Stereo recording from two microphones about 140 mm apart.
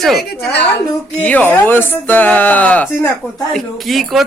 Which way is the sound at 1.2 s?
10° left (ahead or behind).